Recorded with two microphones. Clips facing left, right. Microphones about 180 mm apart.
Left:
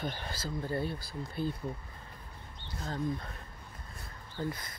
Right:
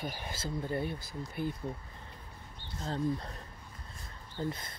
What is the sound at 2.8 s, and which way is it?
Speech, 35° right (ahead or behind).